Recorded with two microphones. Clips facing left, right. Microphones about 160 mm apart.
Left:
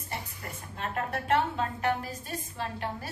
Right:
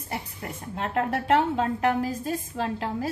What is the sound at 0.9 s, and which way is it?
Speech, 70° right (ahead or behind).